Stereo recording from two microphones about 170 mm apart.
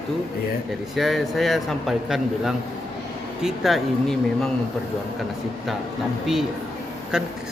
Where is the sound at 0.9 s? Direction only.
Centre (ahead or behind).